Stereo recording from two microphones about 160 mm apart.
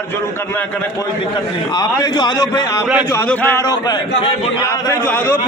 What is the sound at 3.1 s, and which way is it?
Speech, 15° left (ahead or behind).